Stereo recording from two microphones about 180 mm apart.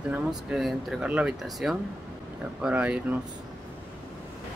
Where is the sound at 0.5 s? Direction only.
Centre (ahead or behind).